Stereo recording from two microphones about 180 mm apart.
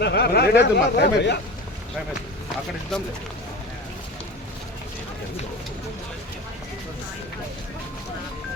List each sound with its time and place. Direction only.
0.0 s speech: 65° left (ahead or behind)